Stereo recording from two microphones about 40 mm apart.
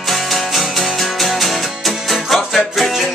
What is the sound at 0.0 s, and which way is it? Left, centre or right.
Music, centre.